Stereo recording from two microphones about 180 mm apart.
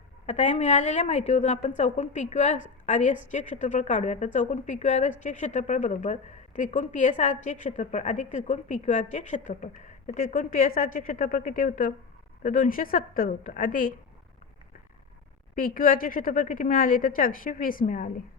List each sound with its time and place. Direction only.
0.3 s a woman's voice: 40° left (ahead or behind)
15.5 s a woman's voice: 50° left (ahead or behind)